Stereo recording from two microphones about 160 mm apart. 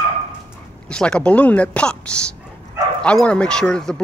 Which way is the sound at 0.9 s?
5° left (ahead or behind).